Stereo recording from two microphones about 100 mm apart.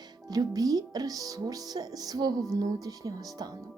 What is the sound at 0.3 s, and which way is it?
Speech, 40° right (ahead or behind).